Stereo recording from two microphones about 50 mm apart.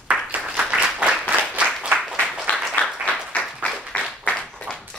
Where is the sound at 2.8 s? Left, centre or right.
Left.